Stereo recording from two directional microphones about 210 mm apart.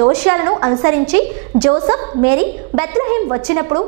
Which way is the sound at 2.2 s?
10° right (ahead or behind).